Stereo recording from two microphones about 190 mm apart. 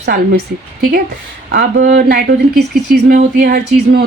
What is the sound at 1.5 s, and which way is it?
A woman's voice, 55° right (ahead or behind).